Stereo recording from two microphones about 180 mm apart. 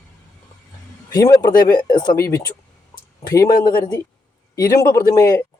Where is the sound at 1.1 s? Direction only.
20° left (ahead or behind).